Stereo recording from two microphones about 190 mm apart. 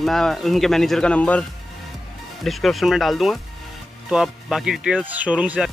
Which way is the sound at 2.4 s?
Centre (ahead or behind).